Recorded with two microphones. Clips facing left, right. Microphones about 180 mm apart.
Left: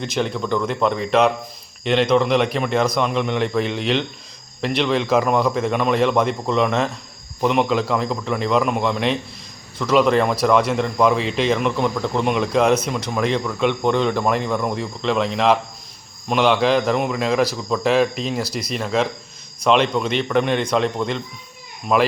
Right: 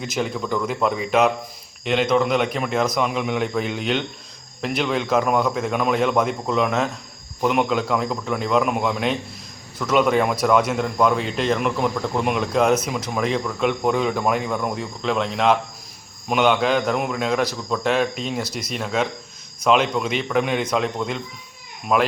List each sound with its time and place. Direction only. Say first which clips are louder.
0.0 s speech: left 2 dB; 5° right (ahead or behind)